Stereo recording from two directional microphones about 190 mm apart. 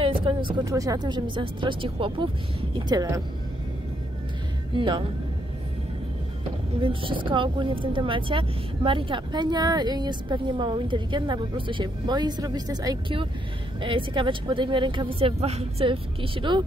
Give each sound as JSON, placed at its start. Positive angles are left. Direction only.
{"t": 0.0, "sound": "speech", "side_deg": -25}
{"t": 4.7, "sound": "speech", "side_deg": -25}
{"t": 6.8, "sound": "speech", "side_deg": -25}